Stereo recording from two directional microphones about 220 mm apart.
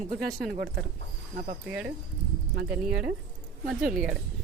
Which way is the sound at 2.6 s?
5° right (ahead or behind).